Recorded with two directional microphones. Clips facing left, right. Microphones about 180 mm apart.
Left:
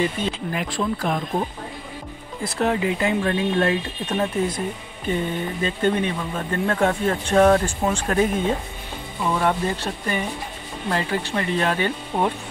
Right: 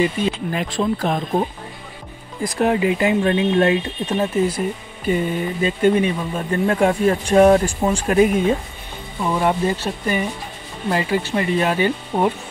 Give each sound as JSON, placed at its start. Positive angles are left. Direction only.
{"t": 0.5, "sound": "speech", "side_deg": -25}
{"t": 4.2, "sound": "speech", "side_deg": -10}
{"t": 9.3, "sound": "speech", "side_deg": -15}